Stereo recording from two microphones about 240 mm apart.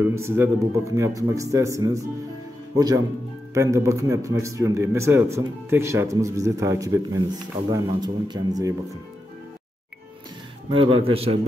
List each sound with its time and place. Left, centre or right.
0.0 s a man's voice: centre
10.7 s speech: right